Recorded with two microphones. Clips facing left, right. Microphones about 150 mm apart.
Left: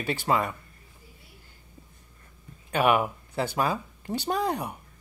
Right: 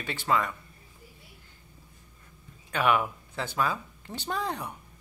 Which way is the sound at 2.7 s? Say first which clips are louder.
Left 3 dB; 10° left (ahead or behind).